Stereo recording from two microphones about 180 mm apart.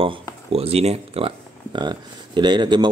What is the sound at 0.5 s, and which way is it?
Speech, 35° right (ahead or behind).